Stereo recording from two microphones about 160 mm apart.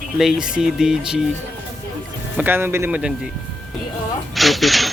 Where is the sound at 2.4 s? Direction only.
15° right (ahead or behind).